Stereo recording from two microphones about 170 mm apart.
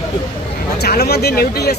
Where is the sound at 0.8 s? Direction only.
70° left (ahead or behind).